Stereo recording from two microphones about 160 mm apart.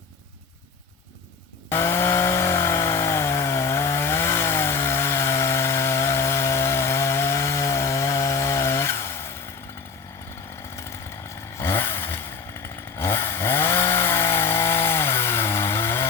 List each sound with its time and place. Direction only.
1.7 s chainsaw: 15° left (ahead or behind)
11.5 s vehicle: 15° left (ahead or behind)
12.6 s chainsaw: 15° left (ahead or behind)